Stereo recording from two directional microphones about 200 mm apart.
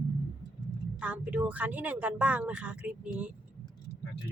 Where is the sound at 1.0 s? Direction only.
5° right (ahead or behind).